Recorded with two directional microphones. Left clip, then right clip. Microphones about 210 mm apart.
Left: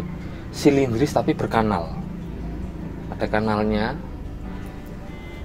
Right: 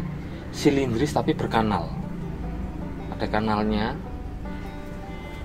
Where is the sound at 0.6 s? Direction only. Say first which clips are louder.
Left 4 dB; 30° left (ahead or behind).